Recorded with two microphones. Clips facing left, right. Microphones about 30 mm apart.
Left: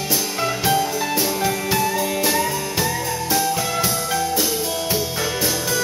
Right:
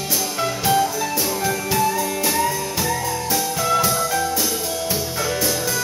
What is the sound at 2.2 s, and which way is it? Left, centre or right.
Music, centre.